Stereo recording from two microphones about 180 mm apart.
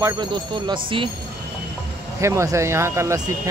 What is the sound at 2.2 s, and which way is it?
Speech, 15° right (ahead or behind).